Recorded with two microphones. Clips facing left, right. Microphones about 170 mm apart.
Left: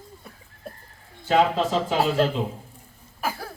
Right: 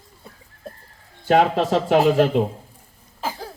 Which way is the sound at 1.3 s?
60° right (ahead or behind).